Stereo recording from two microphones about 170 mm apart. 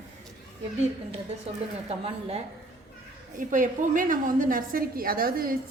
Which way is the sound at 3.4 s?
50° right (ahead or behind).